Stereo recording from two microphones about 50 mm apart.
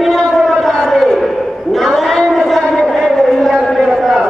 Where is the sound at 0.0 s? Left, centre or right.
Centre.